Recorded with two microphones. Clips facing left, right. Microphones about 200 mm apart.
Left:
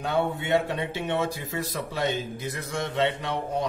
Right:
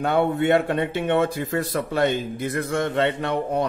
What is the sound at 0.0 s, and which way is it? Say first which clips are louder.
Speech: right 6 dB; 60° right (ahead or behind).